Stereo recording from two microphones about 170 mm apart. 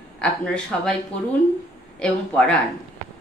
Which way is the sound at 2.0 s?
5° left (ahead or behind).